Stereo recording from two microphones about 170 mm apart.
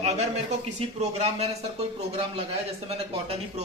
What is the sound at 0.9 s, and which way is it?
Speech, 40° right (ahead or behind).